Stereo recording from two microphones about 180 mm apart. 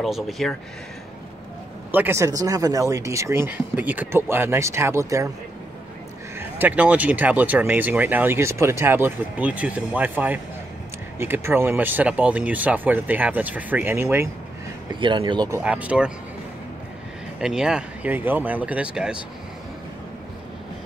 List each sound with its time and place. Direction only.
0.0 s speech: centre (ahead or behind)
1.9 s speech: 10° right (ahead or behind)
6.3 s speech: 10° right (ahead or behind)
14.9 s speech: 25° right (ahead or behind)
15.6 s speech: 5° right (ahead or behind)
17.4 s speech: 5° right (ahead or behind)